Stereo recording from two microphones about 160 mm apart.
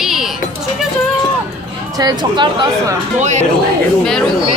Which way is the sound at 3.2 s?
45° right (ahead or behind).